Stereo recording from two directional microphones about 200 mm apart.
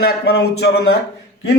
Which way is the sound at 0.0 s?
55° left (ahead or behind).